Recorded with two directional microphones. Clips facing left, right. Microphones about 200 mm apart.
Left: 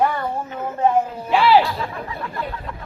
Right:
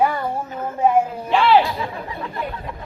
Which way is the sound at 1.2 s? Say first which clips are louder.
Left 1 dB; 5° left (ahead or behind).